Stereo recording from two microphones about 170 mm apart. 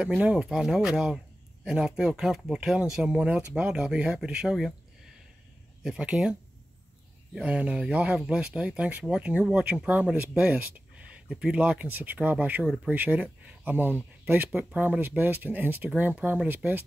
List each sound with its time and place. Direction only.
0.0 s speech: 5° right (ahead or behind)
5.9 s speech: 5° right (ahead or behind)
7.3 s speech: 5° right (ahead or behind)